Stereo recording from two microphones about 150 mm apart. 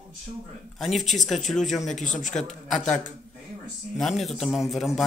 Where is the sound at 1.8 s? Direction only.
55° left (ahead or behind).